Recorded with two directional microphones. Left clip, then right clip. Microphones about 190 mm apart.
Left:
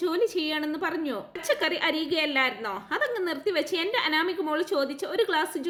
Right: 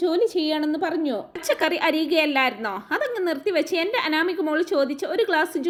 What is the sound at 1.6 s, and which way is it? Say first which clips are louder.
A woman's voice: right 5 dB; 30° right (ahead or behind).